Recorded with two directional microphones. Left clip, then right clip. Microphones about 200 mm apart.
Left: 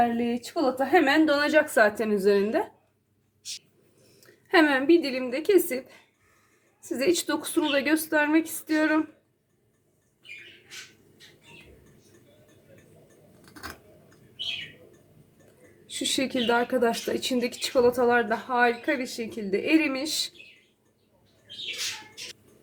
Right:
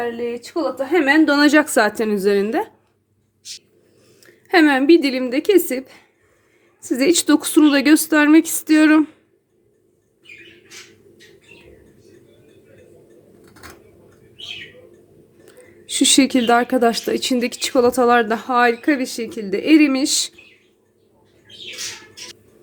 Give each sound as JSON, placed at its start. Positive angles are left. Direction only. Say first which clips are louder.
{"t": 0.9, "sound": "speech", "louder": "right 7 dB", "side_deg": -45}
{"t": 4.2, "sound": "a sound", "louder": "right 6 dB", "side_deg": -30}
{"t": 4.9, "sound": "speech", "louder": "right 8 dB", "side_deg": -50}
{"t": 15.9, "sound": "speech", "louder": "right 12 dB", "side_deg": -55}